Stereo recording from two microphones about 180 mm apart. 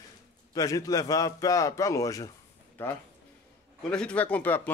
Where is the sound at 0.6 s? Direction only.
20° left (ahead or behind).